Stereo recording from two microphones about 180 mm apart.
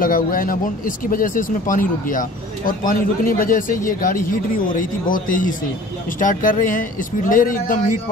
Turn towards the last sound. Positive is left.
turn(degrees=50)  # may be behind; listen again after turning